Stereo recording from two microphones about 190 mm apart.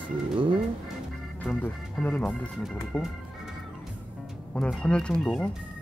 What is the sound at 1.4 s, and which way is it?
Speech, 5° left (ahead or behind).